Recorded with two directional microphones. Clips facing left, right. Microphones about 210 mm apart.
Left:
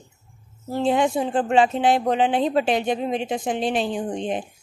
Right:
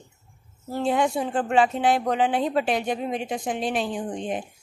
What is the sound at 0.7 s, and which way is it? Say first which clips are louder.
Speech: left 3 dB; 25° left (ahead or behind).